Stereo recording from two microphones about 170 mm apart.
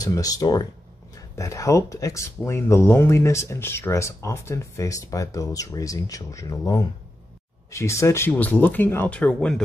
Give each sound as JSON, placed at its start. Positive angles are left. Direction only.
{"t": 0.0, "sound": "speech", "side_deg": 20}